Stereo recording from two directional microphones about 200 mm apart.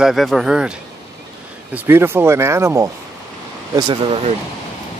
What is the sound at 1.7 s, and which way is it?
Speech, 10° right (ahead or behind).